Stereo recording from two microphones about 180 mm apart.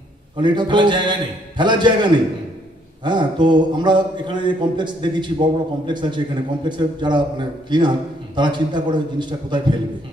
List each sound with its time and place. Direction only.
0.4 s a man's voice: 25° right (ahead or behind)